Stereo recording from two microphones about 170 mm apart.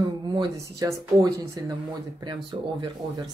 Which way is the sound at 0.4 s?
20° right (ahead or behind).